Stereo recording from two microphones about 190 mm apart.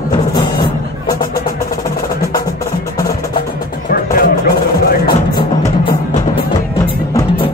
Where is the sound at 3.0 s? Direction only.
20° left (ahead or behind).